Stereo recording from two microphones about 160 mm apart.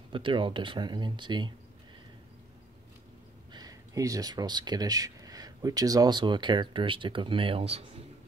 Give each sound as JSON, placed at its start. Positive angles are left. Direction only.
{"t": 0.1, "sound": "speech", "side_deg": -30}
{"t": 3.5, "sound": "speech", "side_deg": -20}